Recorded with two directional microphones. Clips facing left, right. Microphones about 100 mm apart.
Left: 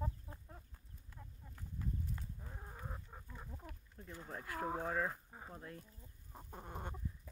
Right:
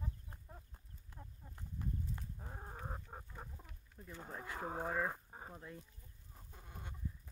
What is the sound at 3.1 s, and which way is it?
Chicken, 40° right (ahead or behind).